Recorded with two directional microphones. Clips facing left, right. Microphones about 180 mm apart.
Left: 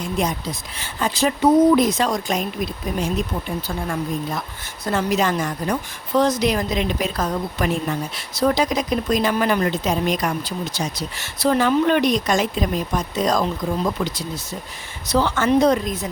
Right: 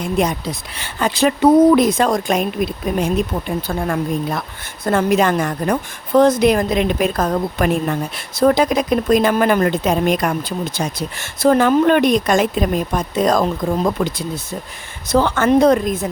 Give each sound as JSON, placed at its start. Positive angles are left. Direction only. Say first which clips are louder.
{"t": 0.2, "sound": "speech", "louder": "right 4 dB", "side_deg": -60}